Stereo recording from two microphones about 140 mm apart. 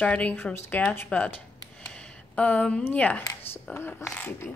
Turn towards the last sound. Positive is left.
turn(degrees=15)  # may be behind; listen again after turning